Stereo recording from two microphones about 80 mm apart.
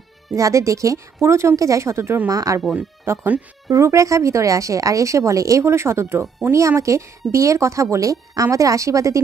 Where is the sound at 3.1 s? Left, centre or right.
Right.